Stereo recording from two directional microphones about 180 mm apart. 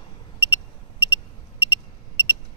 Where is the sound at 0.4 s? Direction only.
25° left (ahead or behind).